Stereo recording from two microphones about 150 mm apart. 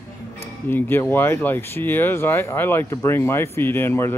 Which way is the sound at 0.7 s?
15° left (ahead or behind).